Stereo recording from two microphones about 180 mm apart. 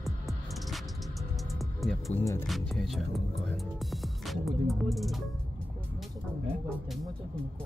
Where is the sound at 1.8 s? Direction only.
Centre (ahead or behind).